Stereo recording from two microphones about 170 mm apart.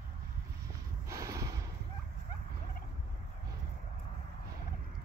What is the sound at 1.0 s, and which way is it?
Snort, 15° right (ahead or behind).